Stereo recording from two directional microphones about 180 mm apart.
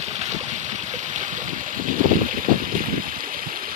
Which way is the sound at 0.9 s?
45° right (ahead or behind).